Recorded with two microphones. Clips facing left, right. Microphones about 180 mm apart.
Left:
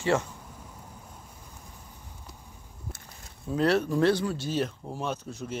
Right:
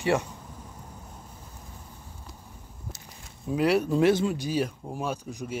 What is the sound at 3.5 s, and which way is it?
Speech, 10° right (ahead or behind).